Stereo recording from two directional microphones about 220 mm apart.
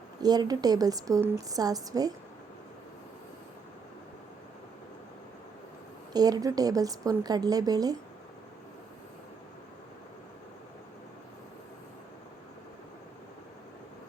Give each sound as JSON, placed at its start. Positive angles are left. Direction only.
{"t": 0.2, "sound": "a woman's voice", "side_deg": -15}
{"t": 6.1, "sound": "a woman's voice", "side_deg": -15}